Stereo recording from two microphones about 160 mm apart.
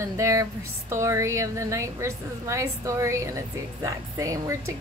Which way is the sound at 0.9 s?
20° right (ahead or behind).